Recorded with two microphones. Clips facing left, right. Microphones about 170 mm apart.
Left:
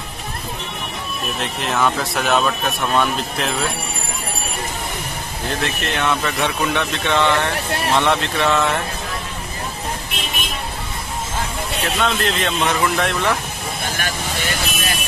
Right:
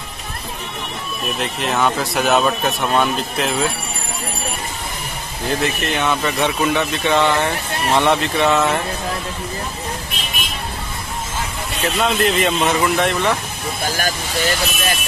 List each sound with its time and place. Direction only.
1.4 s speech: centre (ahead or behind)
5.6 s speech: centre (ahead or behind)
12.0 s speech: 5° right (ahead or behind)
13.9 s vehicle: 40° right (ahead or behind)